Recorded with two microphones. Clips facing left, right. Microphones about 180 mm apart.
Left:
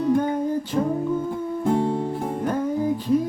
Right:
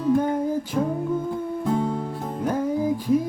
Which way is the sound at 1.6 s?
30° left (ahead or behind).